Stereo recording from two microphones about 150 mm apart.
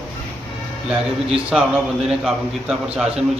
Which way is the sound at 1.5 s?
Centre (ahead or behind).